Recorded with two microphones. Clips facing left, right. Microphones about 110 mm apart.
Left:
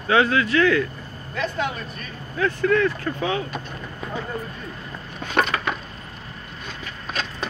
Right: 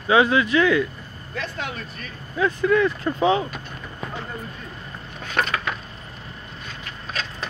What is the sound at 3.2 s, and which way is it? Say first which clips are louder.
Speech: right 6 dB; 25° right (ahead or behind).